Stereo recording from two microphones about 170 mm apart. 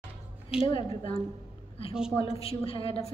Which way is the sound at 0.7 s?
30° left (ahead or behind).